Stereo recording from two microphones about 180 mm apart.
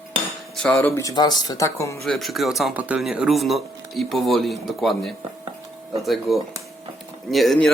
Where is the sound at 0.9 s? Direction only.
15° left (ahead or behind).